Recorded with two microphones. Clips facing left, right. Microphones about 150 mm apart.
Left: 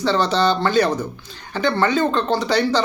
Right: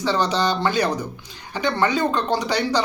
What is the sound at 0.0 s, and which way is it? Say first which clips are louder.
Speech: left 3 dB; 15° right (ahead or behind).